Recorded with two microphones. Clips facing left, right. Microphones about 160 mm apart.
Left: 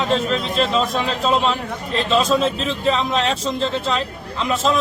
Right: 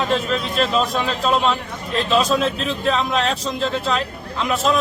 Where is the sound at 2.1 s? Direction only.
Centre (ahead or behind).